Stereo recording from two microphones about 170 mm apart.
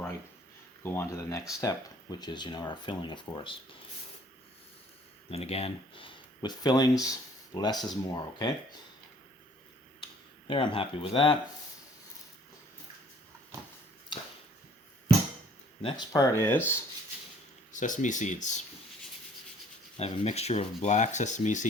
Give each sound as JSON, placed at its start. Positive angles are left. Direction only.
{"t": 0.8, "sound": "speech", "side_deg": 15}
{"t": 5.3, "sound": "speech", "side_deg": 35}
{"t": 10.0, "sound": "speech", "side_deg": 30}
{"t": 15.8, "sound": "speech", "side_deg": 30}
{"t": 16.3, "sound": "speech", "side_deg": 15}
{"t": 17.7, "sound": "speech", "side_deg": 50}
{"t": 20.0, "sound": "speech", "side_deg": 40}